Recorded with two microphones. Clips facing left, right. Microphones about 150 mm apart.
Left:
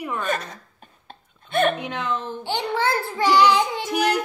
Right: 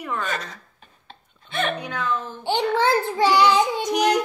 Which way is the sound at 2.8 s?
20° right (ahead or behind).